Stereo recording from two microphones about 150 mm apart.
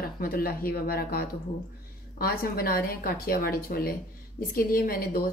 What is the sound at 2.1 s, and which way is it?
A woman's voice, 80° left.